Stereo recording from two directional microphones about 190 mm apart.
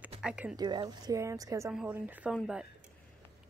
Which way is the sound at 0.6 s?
20° right (ahead or behind).